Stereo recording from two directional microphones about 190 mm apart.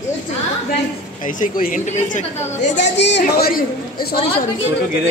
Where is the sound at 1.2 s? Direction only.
45° left (ahead or behind).